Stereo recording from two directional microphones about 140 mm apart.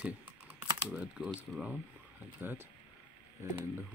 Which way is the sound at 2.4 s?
15° right (ahead or behind).